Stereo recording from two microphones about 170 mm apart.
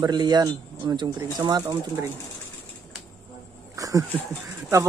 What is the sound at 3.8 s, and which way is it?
Speech, 20° right (ahead or behind).